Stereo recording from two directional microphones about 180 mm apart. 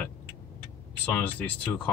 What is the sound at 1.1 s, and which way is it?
Speech, 10° left (ahead or behind).